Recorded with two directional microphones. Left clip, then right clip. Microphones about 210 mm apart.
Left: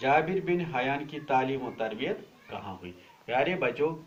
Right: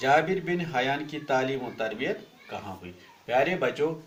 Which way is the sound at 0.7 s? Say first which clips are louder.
Right 3 dB; 50° right (ahead or behind).